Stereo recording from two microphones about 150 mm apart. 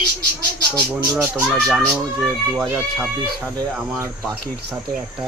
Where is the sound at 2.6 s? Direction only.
15° right (ahead or behind).